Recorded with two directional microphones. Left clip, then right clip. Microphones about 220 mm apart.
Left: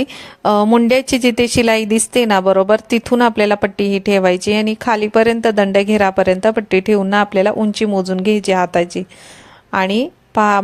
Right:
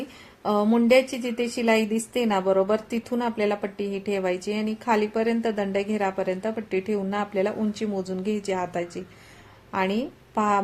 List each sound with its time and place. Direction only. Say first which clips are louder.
0.4 s a woman's voice: left 10 dB; 40° left (ahead or behind)